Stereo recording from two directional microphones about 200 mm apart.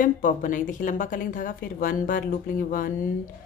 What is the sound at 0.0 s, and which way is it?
A woman's voice, 40° left (ahead or behind).